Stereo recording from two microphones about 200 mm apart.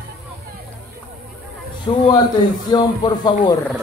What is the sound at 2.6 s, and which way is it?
Speech, 20° left (ahead or behind).